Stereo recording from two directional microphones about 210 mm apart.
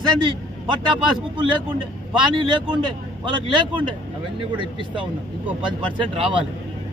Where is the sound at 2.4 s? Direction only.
20° right (ahead or behind).